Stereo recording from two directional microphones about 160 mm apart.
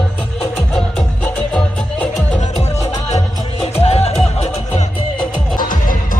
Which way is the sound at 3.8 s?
40° left (ahead or behind).